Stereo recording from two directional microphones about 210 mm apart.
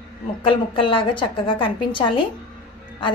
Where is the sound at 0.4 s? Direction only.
25° left (ahead or behind).